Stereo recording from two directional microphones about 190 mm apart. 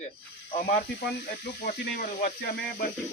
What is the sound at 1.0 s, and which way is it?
Speech, 60° left (ahead or behind).